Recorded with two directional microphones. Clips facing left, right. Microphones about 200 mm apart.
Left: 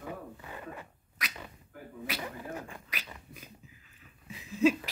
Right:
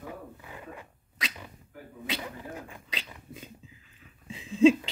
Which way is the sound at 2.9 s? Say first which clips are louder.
Right 3 dB; 25° right (ahead or behind).